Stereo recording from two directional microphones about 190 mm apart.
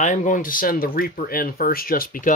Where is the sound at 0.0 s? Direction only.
45° left (ahead or behind).